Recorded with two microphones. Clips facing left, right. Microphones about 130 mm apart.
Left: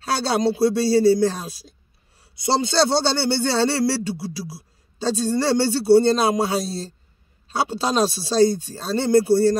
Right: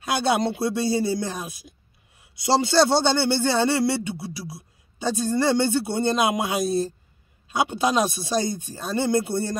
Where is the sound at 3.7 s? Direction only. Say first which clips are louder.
Left 1 dB; 20° right (ahead or behind).